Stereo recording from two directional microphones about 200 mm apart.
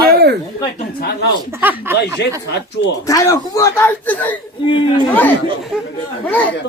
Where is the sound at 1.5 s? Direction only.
10° right (ahead or behind).